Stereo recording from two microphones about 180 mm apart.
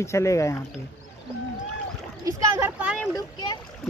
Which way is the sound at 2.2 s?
15° right (ahead or behind).